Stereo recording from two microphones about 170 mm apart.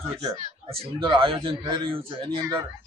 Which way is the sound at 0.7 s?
30° right (ahead or behind).